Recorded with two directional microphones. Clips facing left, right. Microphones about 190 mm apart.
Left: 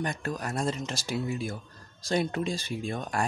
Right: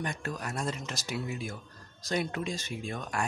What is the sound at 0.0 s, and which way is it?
Speech, 40° left (ahead or behind).